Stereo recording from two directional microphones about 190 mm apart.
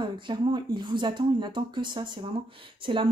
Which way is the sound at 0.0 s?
25° right (ahead or behind).